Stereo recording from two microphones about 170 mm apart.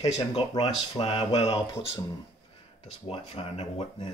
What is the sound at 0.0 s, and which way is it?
Speech, 35° left (ahead or behind).